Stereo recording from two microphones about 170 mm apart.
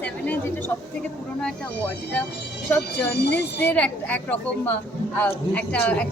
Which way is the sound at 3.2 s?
85° left.